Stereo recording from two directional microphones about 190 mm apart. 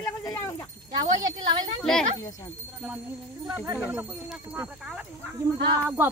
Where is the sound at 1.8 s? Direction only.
5° left (ahead or behind).